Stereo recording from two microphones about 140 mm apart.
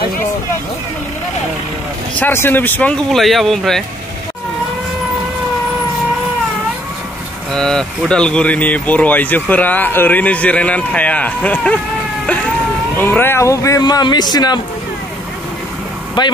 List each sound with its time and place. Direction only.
2.1 s speech: 15° left (ahead or behind)
7.5 s speech: 5° left (ahead or behind)
12.9 s a man's voice: 15° left (ahead or behind)
16.2 s speech: 35° left (ahead or behind)